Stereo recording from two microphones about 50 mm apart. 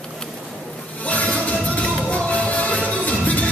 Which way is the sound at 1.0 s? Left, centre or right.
Left.